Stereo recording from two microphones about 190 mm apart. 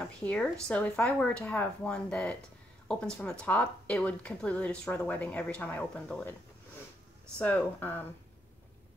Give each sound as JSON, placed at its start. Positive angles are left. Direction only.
{"t": 0.2, "sound": "speech", "side_deg": 5}
{"t": 7.3, "sound": "speech", "side_deg": 10}